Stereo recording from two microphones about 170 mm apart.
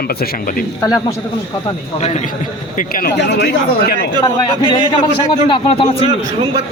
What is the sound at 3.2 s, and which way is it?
Speech, 90° left.